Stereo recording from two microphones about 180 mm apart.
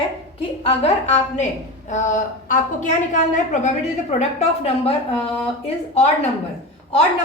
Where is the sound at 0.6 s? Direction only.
35° left (ahead or behind).